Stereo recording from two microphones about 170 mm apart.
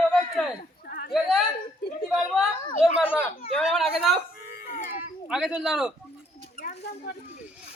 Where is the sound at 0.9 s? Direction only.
55° left (ahead or behind).